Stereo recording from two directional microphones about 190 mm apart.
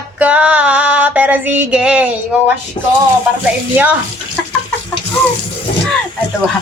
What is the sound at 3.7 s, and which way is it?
Female singing, 10° right (ahead or behind).